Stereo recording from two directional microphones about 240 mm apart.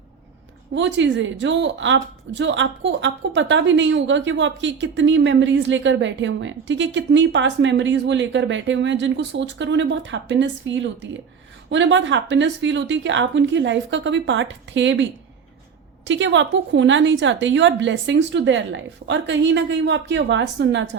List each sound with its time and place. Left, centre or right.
0.7 s a woman's voice: right
16.0 s a woman's voice: right